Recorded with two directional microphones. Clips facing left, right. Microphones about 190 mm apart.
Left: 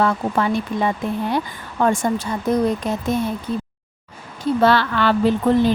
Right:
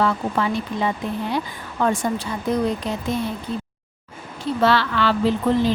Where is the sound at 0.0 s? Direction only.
50° left (ahead or behind).